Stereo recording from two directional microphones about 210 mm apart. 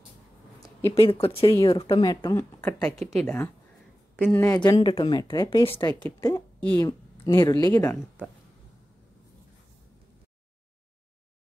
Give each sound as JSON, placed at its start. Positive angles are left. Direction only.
{"t": 0.9, "sound": "a woman's voice", "side_deg": 25}
{"t": 4.6, "sound": "a woman's voice", "side_deg": 20}